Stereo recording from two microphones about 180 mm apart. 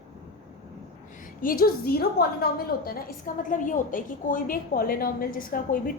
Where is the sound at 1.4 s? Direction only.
55° left (ahead or behind).